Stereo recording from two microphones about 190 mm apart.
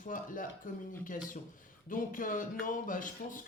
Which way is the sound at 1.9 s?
45° left (ahead or behind).